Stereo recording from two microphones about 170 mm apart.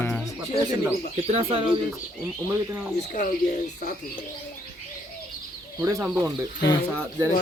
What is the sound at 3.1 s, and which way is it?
Speech, 50° left (ahead or behind).